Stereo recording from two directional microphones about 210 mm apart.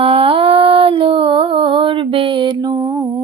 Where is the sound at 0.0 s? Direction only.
25° right (ahead or behind).